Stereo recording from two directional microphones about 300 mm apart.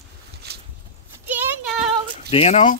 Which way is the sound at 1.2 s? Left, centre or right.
Centre.